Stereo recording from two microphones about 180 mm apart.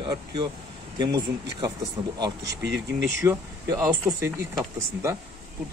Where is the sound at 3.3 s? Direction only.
20° right (ahead or behind).